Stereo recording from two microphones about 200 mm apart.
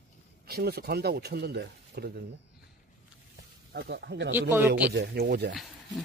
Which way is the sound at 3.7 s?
55° right (ahead or behind).